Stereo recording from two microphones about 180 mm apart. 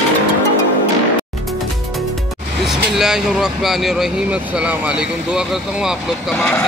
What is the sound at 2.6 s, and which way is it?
Speech, centre (ahead or behind).